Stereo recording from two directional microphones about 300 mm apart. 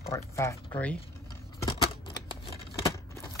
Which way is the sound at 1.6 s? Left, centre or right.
Centre.